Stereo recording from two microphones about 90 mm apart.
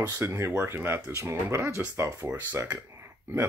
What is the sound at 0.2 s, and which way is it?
Speech, 30° right (ahead or behind).